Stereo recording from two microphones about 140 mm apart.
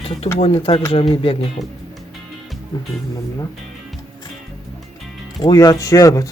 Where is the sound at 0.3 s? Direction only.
40° left (ahead or behind).